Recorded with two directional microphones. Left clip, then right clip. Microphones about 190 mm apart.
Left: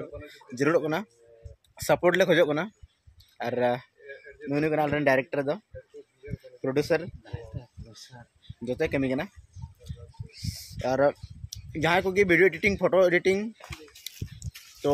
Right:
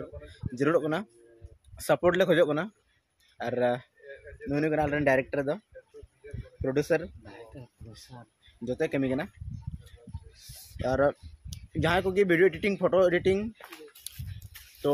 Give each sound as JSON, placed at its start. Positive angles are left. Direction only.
{"t": 0.6, "sound": "a man's voice", "side_deg": 15}
{"t": 6.6, "sound": "a man's voice", "side_deg": 20}
{"t": 8.6, "sound": "a man's voice", "side_deg": 20}
{"t": 10.3, "sound": "speech", "side_deg": 15}